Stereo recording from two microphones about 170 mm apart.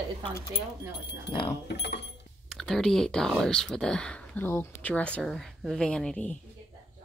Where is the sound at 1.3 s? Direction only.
30° left (ahead or behind).